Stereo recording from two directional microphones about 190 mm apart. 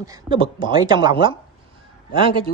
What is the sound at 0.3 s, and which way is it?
Speech, 25° right (ahead or behind).